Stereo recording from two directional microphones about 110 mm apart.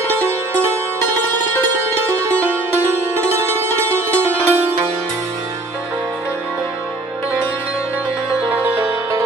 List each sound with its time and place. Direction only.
2.0 s music: 25° right (ahead or behind)
8.5 s music: 15° right (ahead or behind)